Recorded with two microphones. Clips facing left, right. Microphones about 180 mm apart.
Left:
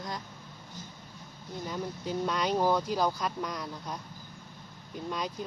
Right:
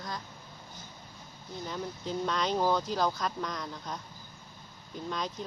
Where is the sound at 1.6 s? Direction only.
5° left (ahead or behind).